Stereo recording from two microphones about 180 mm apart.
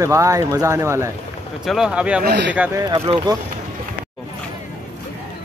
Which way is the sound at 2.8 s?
25° right (ahead or behind).